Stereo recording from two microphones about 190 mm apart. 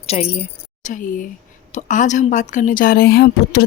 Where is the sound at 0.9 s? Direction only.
45° left (ahead or behind).